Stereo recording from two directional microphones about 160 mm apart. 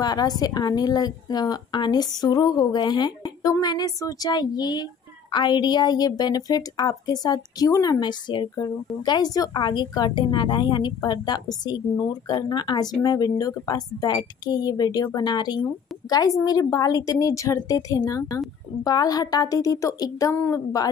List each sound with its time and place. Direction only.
0.0 s a woman's voice: 25° left (ahead or behind)